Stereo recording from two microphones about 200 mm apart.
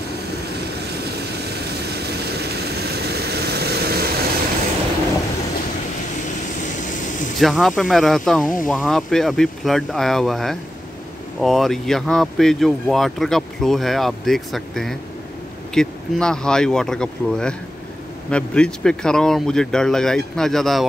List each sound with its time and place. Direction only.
0.7 s vehicle: 55° right (ahead or behind)
6.6 s vehicle: 40° left (ahead or behind)
7.3 s speech: centre (ahead or behind)